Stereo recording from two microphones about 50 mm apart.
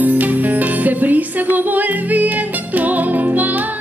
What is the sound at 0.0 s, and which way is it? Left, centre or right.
Music, right.